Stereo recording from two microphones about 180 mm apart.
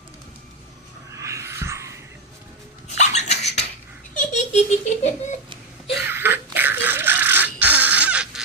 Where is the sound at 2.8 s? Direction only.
40° left (ahead or behind).